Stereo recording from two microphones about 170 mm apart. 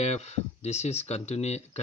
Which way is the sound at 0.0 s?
40° left (ahead or behind).